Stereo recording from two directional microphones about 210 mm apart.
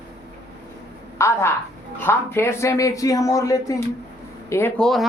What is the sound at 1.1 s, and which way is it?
A man's voice, 15° left (ahead or behind).